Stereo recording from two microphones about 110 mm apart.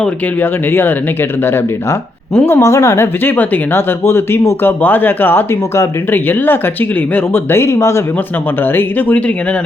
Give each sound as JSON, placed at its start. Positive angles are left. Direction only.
{"t": 0.7, "sound": "speech", "side_deg": 20}